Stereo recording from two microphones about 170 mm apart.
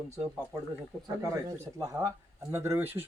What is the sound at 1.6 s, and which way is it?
Speech, 15° right (ahead or behind).